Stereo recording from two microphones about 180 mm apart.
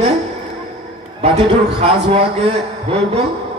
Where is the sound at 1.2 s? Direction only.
35° right (ahead or behind).